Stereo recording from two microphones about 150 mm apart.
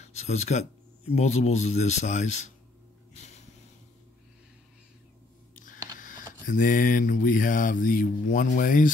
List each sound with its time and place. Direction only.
0.1 s speech: 50° left (ahead or behind)
3.2 s snort: 45° left (ahead or behind)
5.6 s a sound: 65° left (ahead or behind)
6.4 s mantra: 65° left (ahead or behind)